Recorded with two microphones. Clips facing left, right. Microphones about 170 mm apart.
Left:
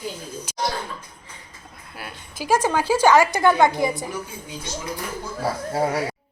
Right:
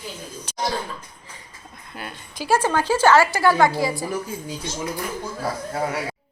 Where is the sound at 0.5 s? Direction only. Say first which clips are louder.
Right 2 dB; 10° left (ahead or behind).